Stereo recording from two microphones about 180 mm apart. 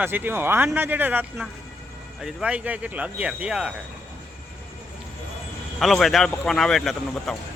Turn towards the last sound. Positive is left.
turn(degrees=0)  # may be behind; listen again after turning